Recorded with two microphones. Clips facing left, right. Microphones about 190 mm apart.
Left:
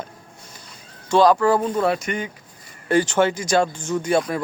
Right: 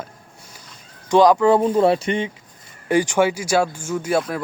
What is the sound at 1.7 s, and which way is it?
Speech, 30° right (ahead or behind).